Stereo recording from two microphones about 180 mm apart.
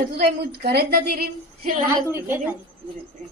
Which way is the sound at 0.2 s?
65° right (ahead or behind).